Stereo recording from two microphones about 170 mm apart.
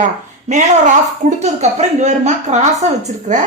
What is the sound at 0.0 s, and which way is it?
A woman's voice, 45° right (ahead or behind).